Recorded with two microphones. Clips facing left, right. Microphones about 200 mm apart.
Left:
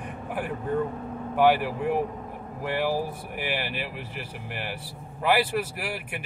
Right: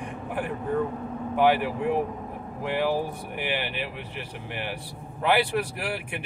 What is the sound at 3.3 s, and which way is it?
Speech, 5° left (ahead or behind).